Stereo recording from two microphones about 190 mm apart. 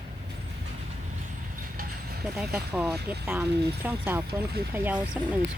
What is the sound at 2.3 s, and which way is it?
Speech, 10° right (ahead or behind).